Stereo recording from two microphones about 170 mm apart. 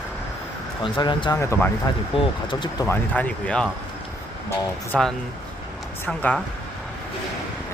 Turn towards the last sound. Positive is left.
turn(degrees=10)  # may be behind; listen again after turning